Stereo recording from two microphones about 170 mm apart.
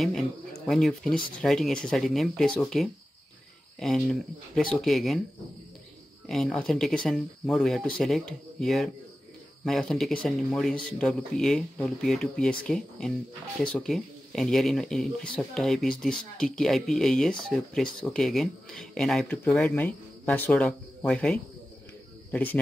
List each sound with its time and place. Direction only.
0.0 s speech: centre (ahead or behind)
6.2 s speech: centre (ahead or behind)